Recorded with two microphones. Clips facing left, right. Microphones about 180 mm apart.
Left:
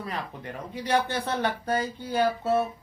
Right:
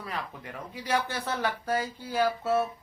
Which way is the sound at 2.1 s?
30° left (ahead or behind).